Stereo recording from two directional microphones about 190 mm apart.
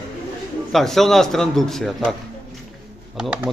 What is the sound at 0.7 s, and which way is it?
Speech, centre (ahead or behind).